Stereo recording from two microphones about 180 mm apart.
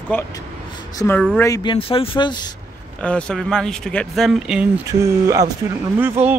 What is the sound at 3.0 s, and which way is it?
Speech, 5° left (ahead or behind).